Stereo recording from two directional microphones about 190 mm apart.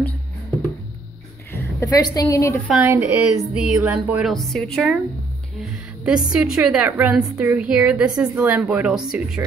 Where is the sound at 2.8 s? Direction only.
10° right (ahead or behind).